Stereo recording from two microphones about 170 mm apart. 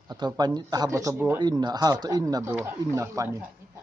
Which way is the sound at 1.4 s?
25° right (ahead or behind).